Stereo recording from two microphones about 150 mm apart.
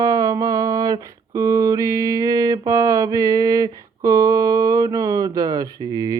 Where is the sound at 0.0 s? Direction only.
25° right (ahead or behind).